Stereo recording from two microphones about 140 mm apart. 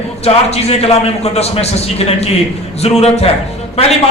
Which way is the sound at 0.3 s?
45° left (ahead or behind).